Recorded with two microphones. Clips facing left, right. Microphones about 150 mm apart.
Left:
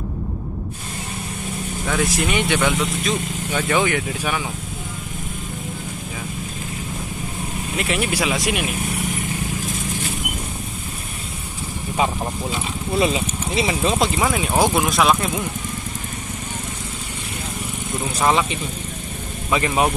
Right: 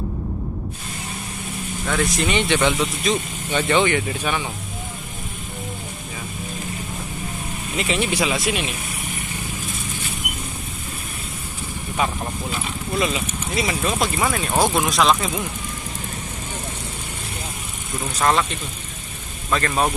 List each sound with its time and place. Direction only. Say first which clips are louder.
1.9 s speech: even; 5° left (ahead or behind)
7.7 s speech: even; 5° left (ahead or behind)
12.0 s speech: left 2 dB; 25° left (ahead or behind)
14.2 s speech: right 1 dB; 10° left (ahead or behind)
14.8 s speech: left 1 dB; centre (ahead or behind)
18.1 s speech: left 1 dB; 10° left (ahead or behind)